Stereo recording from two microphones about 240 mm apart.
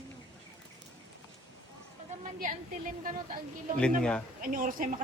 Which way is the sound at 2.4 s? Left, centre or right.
Right.